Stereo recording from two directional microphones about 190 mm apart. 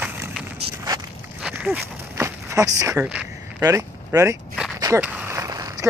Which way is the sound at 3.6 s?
15° right (ahead or behind).